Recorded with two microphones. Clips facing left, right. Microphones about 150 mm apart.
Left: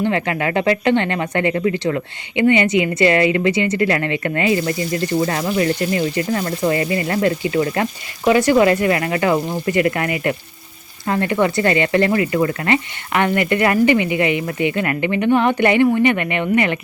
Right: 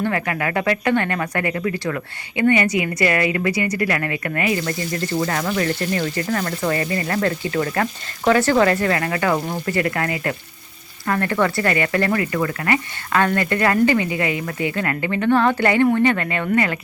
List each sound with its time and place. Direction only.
0.0 s speech: 25° left (ahead or behind)